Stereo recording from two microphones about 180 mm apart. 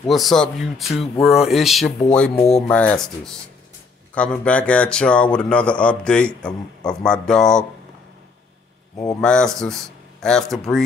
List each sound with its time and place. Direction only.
0.1 s a man's voice: centre (ahead or behind)
8.9 s speech: 20° left (ahead or behind)
9.2 s a man's voice: 5° left (ahead or behind)